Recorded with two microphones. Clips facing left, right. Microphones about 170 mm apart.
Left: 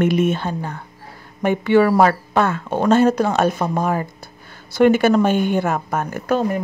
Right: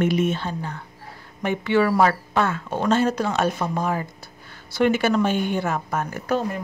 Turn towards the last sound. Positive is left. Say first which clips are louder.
# left 4 dB
turn(degrees=50)  # may be behind; listen again after turning